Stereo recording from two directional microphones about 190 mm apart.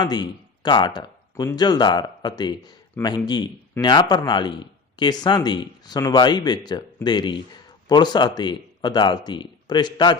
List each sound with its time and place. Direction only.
0.0 s speech: 20° left (ahead or behind)